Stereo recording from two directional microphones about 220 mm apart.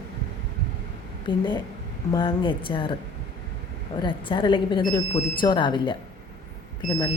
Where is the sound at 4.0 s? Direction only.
20° left (ahead or behind).